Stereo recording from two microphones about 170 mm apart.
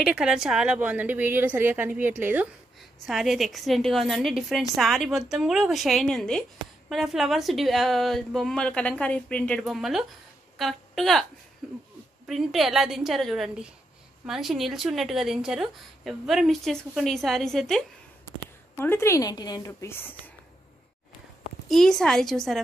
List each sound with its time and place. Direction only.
0.0 s a woman's voice: 5° right (ahead or behind)
2.8 s a woman's voice: centre (ahead or behind)
18.8 s a woman's voice: 15° left (ahead or behind)
21.6 s speech: centre (ahead or behind)